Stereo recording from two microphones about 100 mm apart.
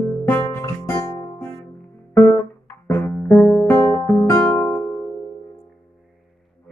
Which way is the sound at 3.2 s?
10° left (ahead or behind).